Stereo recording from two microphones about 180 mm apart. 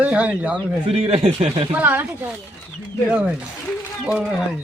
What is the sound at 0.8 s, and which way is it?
Speech, 35° right (ahead or behind).